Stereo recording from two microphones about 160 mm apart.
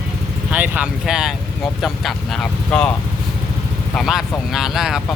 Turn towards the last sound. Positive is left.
turn(degrees=0)  # may be behind; listen again after turning